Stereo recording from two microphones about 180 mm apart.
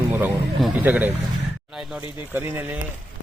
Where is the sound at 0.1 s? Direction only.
10° right (ahead or behind).